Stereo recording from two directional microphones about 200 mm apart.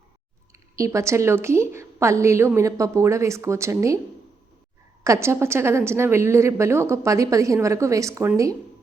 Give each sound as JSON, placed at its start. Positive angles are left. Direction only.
{"t": 0.8, "sound": "a woman's voice", "side_deg": -15}
{"t": 5.0, "sound": "a woman's voice", "side_deg": -15}